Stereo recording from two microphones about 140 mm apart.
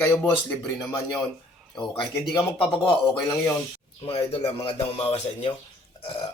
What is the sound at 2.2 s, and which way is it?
Speech, 35° left (ahead or behind).